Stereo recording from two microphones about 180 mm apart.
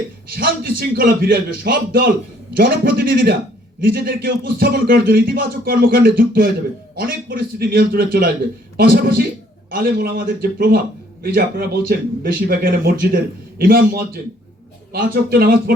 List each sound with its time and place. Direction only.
0.3 s a man's voice: 55° right (ahead or behind)